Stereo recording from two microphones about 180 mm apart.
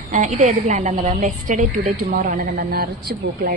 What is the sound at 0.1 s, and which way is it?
A woman's voice, 40° right (ahead or behind).